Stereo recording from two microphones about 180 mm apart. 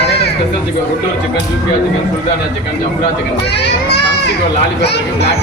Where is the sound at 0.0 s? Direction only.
65° left (ahead or behind).